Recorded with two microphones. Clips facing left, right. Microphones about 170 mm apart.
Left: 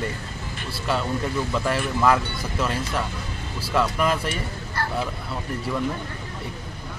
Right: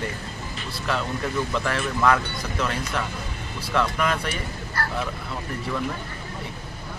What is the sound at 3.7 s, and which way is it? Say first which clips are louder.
Speech: left 2 dB; 5° left (ahead or behind).